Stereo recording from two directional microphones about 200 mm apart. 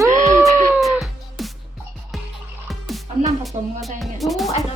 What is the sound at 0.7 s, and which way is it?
Music, centre (ahead or behind).